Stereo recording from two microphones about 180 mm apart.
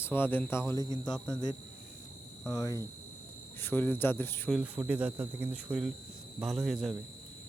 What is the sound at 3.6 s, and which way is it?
Speech, 10° left (ahead or behind).